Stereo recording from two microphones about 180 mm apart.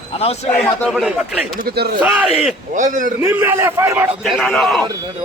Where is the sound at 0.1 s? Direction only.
35° left (ahead or behind).